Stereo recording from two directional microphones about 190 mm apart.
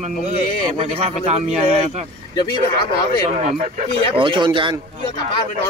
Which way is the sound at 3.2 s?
35° right (ahead or behind).